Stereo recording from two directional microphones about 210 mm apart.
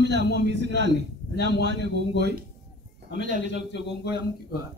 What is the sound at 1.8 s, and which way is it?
A man's voice, 55° left (ahead or behind).